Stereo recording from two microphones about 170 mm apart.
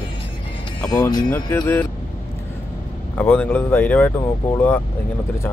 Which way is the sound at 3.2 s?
10° left (ahead or behind).